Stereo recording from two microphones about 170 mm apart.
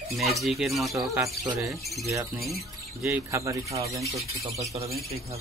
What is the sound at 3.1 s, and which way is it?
Speech, 15° right (ahead or behind).